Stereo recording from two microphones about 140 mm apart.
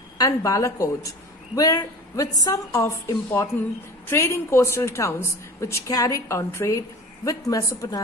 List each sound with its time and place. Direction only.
0.2 s a woman's voice: 25° left (ahead or behind)